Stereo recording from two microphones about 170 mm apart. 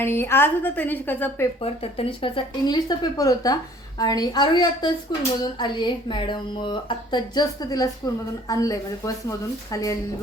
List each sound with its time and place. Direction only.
0.0 s a woman's voice: 15° left (ahead or behind)
1.6 s speech: 35° left (ahead or behind); by 10.0 s 20° left (ahead or behind)